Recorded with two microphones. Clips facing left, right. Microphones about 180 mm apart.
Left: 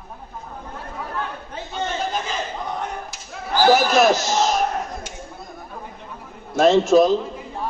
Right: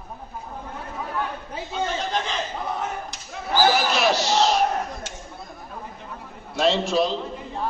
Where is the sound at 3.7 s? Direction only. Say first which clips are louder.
Left 5 dB; 45° left (ahead or behind).